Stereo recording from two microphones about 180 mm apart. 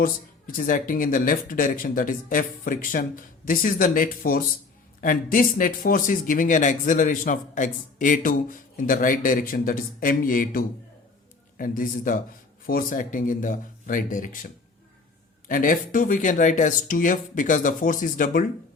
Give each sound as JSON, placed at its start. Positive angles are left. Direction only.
{"t": 0.0, "sound": "speech", "side_deg": 50}
{"t": 15.4, "sound": "speech", "side_deg": 50}